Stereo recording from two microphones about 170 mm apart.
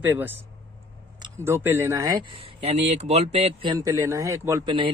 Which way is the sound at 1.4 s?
15° right (ahead or behind).